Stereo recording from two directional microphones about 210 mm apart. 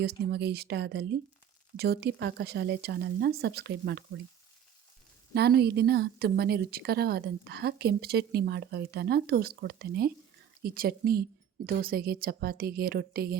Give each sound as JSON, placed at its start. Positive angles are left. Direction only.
{"t": 0.0, "sound": "a woman's voice", "side_deg": -50}
{"t": 5.3, "sound": "a woman's voice", "side_deg": -50}